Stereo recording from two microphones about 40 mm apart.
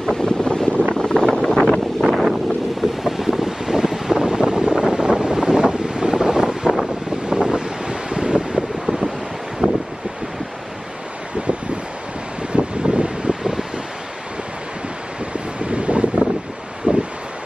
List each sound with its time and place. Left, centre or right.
0.0 s boat: centre
1.0 s wind noise: centre
1.7 s wind noise: centre; by 8.6 s right
9.6 s wind: right
12.5 s wind noise: right
13.4 s wind: centre
15.3 s wind noise: right
16.9 s wind: right